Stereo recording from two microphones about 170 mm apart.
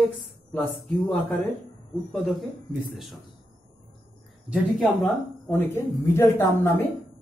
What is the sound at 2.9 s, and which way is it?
Speech, centre (ahead or behind).